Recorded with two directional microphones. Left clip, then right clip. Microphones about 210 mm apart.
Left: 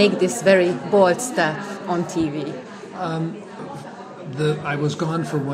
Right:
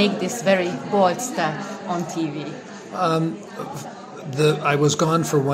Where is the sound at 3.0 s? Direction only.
55° right (ahead or behind).